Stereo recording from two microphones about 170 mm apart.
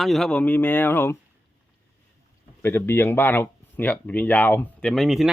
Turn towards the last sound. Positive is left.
turn(degrees=0)  # may be behind; listen again after turning